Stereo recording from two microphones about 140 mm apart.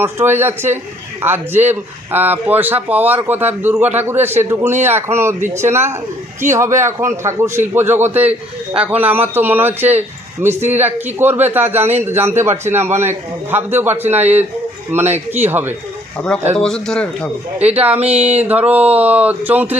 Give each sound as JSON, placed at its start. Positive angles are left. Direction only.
{"t": 0.0, "sound": "a man's voice", "side_deg": -15}
{"t": 16.6, "sound": "speech", "side_deg": 5}
{"t": 17.6, "sound": "a man's voice", "side_deg": -10}